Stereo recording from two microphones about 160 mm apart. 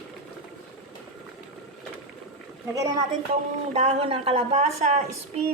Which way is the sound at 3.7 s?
40° right (ahead or behind).